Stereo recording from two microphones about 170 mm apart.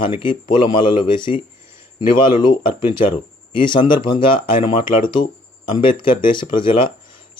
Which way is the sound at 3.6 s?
30° left (ahead or behind).